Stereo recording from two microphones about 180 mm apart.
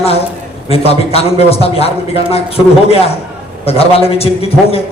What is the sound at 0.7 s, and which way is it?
A man's voice, 35° left (ahead or behind).